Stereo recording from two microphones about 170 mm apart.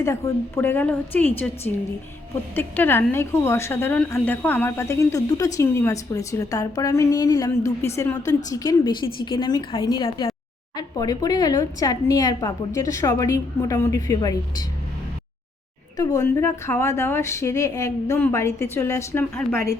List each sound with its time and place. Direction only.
0.0 s speech: 15° left (ahead or behind)
2.6 s speech: 10° left (ahead or behind)
16.0 s speech: 20° left (ahead or behind)